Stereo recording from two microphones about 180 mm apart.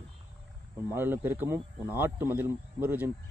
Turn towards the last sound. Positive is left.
turn(degrees=-10)  # may be behind; listen again after turning